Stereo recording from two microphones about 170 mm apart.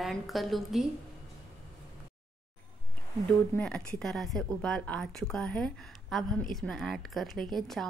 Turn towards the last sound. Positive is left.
turn(degrees=0)  # may be behind; listen again after turning